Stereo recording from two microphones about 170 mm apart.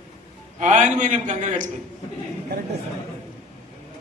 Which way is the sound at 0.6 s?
45° right (ahead or behind).